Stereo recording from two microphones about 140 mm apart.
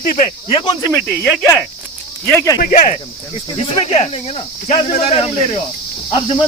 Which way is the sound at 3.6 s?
45° left (ahead or behind).